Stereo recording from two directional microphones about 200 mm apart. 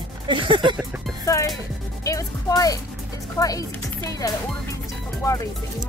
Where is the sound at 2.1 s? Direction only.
15° left (ahead or behind).